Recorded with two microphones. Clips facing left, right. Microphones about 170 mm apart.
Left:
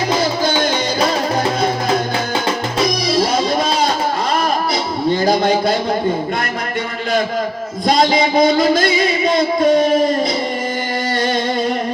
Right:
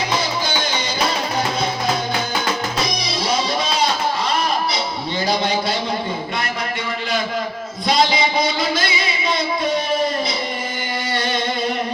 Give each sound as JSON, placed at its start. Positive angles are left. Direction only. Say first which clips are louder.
{"t": 0.2, "sound": "music", "louder": "left 6 dB", "side_deg": 50}
{"t": 2.8, "sound": "music", "louder": "left 7 dB", "side_deg": 50}
{"t": 7.9, "sound": "a sound", "louder": "left 4 dB", "side_deg": 45}